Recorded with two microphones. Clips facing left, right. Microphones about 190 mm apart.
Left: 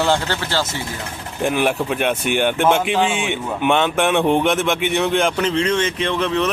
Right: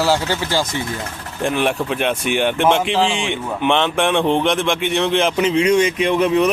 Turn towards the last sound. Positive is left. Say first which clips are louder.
# right 4 dB
turn(degrees=-10)  # may be behind; listen again after turning